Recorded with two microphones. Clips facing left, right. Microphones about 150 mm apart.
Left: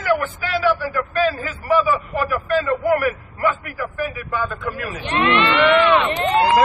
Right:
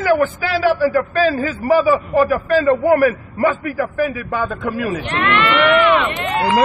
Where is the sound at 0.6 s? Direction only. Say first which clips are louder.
Right 6 dB; 35° right (ahead or behind).